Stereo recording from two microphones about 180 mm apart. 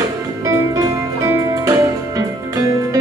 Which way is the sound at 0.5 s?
15° right (ahead or behind).